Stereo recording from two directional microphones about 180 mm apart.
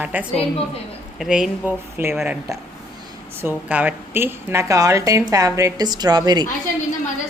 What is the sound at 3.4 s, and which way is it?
A woman's voice, 10° right (ahead or behind).